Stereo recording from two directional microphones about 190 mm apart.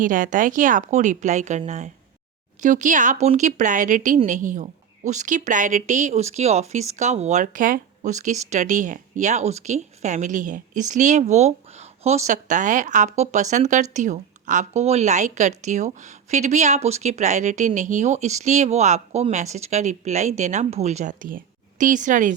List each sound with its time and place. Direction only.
0.0 s a woman's voice: 45° right (ahead or behind)